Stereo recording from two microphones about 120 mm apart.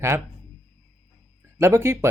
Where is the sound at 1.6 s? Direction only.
20° right (ahead or behind).